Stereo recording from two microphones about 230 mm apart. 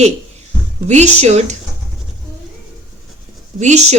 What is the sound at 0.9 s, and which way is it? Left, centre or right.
Speech, right.